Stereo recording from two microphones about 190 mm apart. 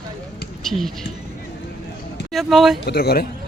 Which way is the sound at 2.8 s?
55° left (ahead or behind).